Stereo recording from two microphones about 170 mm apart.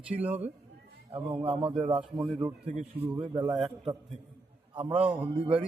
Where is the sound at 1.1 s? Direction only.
35° right (ahead or behind).